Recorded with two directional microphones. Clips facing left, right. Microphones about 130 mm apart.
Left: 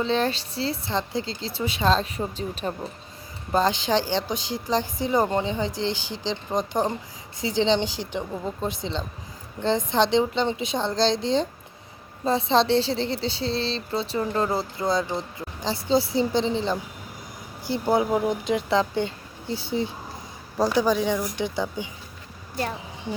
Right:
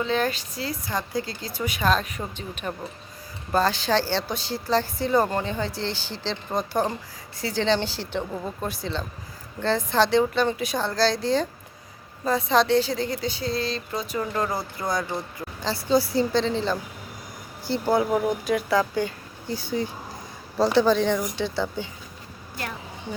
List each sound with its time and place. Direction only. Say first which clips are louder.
0.0 s a woman's voice: left 1 dB; 30° left (ahead or behind)
3.5 s a woman's voice: even; 20° left (ahead or behind)
20.7 s speech: right 3 dB; 10° left (ahead or behind)